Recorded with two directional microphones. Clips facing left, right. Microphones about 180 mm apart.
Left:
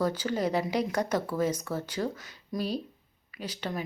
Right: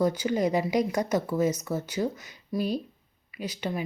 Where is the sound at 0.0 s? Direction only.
10° right (ahead or behind).